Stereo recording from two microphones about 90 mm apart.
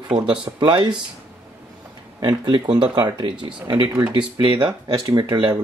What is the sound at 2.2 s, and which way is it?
Speech, 55° right (ahead or behind).